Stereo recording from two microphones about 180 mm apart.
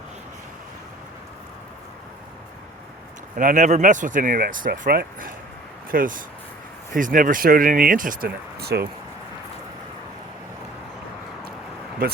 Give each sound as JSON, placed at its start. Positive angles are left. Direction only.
{"t": 3.3, "sound": "speech", "side_deg": -45}
{"t": 12.0, "sound": "speech", "side_deg": -50}